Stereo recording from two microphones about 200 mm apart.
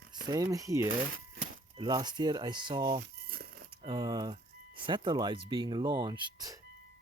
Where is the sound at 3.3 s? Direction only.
50° right (ahead or behind).